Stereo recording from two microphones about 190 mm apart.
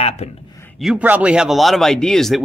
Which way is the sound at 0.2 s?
35° left (ahead or behind).